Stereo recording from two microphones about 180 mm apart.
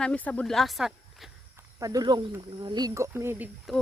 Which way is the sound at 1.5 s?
20° right (ahead or behind).